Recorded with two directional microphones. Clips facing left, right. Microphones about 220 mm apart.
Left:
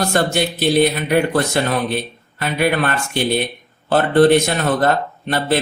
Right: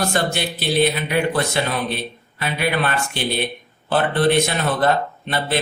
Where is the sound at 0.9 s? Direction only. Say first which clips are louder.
Left 4 dB; 45° left (ahead or behind).